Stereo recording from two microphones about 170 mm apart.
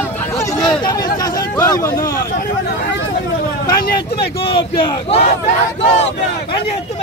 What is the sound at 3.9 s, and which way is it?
Speech, 30° left (ahead or behind).